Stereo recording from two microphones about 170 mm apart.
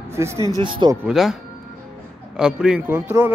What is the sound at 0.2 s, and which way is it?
Speech, 15° right (ahead or behind).